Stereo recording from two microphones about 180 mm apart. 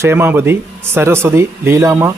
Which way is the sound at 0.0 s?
15° right (ahead or behind).